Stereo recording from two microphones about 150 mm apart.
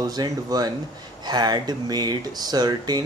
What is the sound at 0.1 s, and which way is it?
Speech, 25° right (ahead or behind).